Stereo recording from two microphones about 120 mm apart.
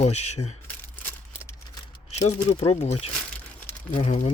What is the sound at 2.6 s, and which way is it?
Speech, 60° left (ahead or behind).